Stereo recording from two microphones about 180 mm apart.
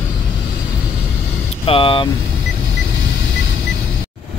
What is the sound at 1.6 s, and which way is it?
Speech, 30° left (ahead or behind).